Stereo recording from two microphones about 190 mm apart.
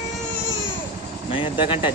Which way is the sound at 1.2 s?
25° left (ahead or behind).